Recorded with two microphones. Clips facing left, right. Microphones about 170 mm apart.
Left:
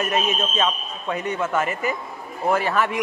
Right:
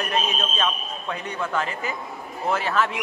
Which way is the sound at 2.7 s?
15° left (ahead or behind).